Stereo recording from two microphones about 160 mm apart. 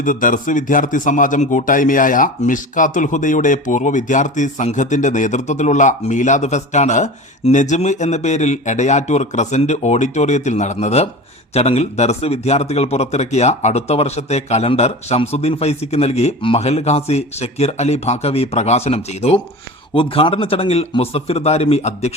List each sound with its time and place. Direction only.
0.0 s a man's voice: 55° left (ahead or behind)